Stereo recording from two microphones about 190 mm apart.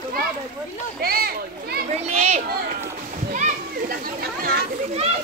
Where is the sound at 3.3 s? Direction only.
45° right (ahead or behind).